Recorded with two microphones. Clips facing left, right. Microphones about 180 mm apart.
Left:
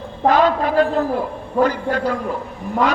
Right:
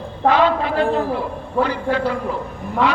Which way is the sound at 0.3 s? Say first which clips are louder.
Left 1 dB; 45° left (ahead or behind).